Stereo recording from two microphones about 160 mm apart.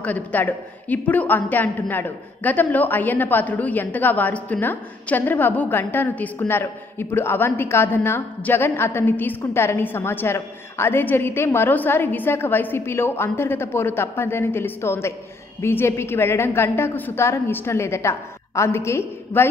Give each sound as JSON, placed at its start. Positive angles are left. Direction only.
{"t": 0.0, "sound": "a woman's voice", "side_deg": 10}